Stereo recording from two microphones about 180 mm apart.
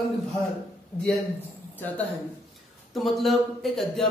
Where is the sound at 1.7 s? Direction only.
10° left (ahead or behind).